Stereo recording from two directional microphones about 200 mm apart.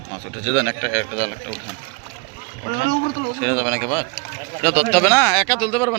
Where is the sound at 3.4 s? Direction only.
10° left (ahead or behind).